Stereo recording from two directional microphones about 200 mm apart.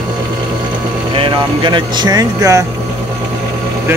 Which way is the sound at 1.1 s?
25° right (ahead or behind).